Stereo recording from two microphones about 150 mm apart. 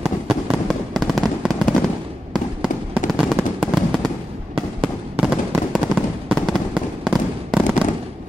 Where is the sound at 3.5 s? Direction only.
5° left (ahead or behind).